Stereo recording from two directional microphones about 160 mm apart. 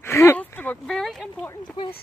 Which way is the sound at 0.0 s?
15° left (ahead or behind).